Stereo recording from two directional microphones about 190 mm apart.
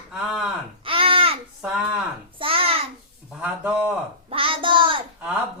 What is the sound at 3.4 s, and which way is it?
Speech, 5° right (ahead or behind).